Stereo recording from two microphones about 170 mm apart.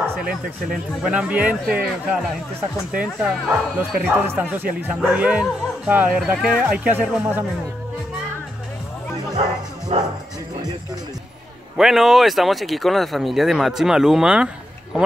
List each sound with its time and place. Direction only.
0.2 s speech: 5° right (ahead or behind)
9.9 s music: 40° right (ahead or behind)
11.7 s speech: centre (ahead or behind)